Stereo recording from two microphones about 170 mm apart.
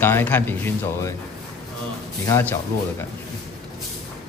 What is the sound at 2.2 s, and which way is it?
Speech, 15° left (ahead or behind).